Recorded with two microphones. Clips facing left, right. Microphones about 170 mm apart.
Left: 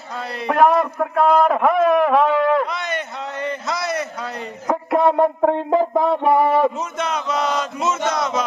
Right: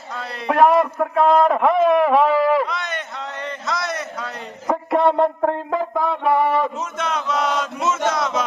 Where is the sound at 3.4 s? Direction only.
5° left (ahead or behind); by 6.0 s 25° left (ahead or behind).